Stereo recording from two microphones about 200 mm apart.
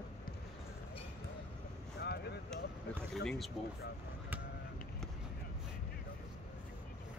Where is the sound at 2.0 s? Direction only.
55° left (ahead or behind).